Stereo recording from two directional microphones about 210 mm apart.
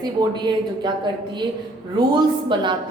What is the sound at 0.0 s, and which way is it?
A woman's voice, 20° right (ahead or behind).